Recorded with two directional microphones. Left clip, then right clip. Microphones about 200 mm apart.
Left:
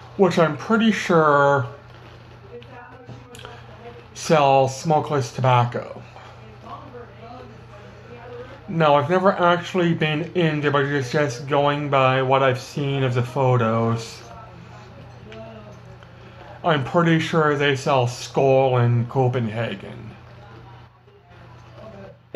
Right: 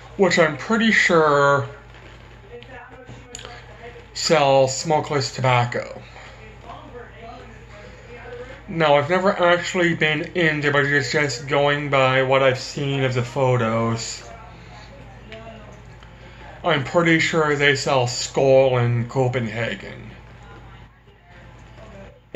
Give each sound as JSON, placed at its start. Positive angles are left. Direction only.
{"t": 0.2, "sound": "speech", "side_deg": 10}
{"t": 4.2, "sound": "speech", "side_deg": 5}
{"t": 8.7, "sound": "speech", "side_deg": 5}
{"t": 16.6, "sound": "speech", "side_deg": 10}